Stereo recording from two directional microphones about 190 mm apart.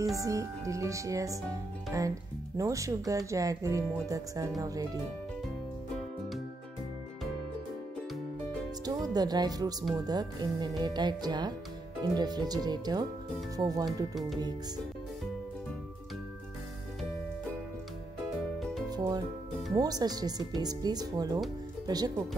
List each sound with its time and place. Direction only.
0.0 s speech: 15° right (ahead or behind)
8.8 s speech: 20° right (ahead or behind)
18.9 s music: 20° right (ahead or behind)
19.7 s speech: 20° right (ahead or behind)